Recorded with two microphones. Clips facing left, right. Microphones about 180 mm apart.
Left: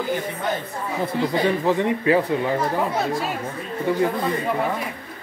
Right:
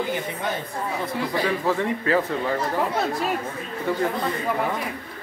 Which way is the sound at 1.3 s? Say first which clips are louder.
Left 2 dB; 15° left (ahead or behind).